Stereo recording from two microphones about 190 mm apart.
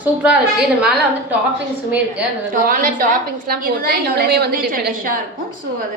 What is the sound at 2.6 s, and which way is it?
A woman's voice, 45° right (ahead or behind).